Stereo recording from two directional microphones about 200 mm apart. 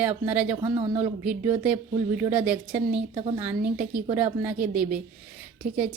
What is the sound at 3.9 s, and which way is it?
A woman's voice, 5° right (ahead or behind).